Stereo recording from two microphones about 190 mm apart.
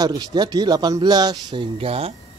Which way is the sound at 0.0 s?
20° right (ahead or behind).